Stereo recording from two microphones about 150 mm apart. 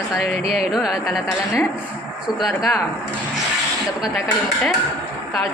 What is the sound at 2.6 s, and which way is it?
Speech, centre (ahead or behind).